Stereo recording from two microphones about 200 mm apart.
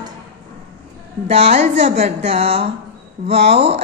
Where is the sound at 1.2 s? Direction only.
30° right (ahead or behind).